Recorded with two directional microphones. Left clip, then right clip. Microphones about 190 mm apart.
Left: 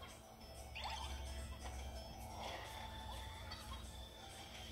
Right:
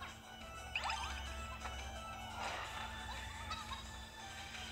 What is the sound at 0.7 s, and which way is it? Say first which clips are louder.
Music: right 7 dB; 55° right (ahead or behind).